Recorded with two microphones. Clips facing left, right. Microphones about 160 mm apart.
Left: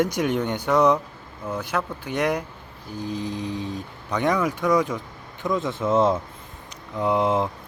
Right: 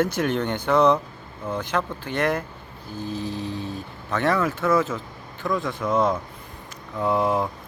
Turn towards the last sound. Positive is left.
turn(degrees=20)  # may be behind; listen again after turning